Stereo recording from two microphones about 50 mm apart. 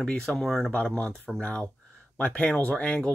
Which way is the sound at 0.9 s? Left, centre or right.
Left.